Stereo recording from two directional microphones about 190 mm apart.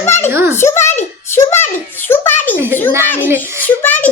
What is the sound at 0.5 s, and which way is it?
Child singing, 15° left (ahead or behind).